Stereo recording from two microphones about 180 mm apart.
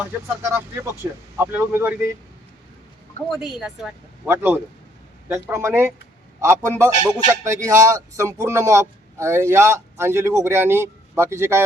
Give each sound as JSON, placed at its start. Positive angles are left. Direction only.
{"t": 0.0, "sound": "speech", "side_deg": -15}
{"t": 3.2, "sound": "a woman's voice", "side_deg": 0}